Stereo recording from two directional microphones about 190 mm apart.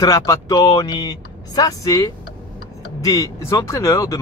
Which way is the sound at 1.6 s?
20° left (ahead or behind).